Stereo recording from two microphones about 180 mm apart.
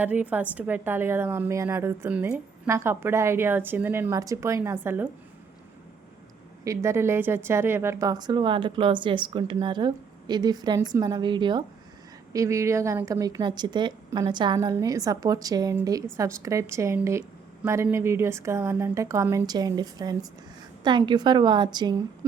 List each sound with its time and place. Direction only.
0.0 s a woman's voice: 10° right (ahead or behind)
6.7 s a woman's voice: 15° right (ahead or behind)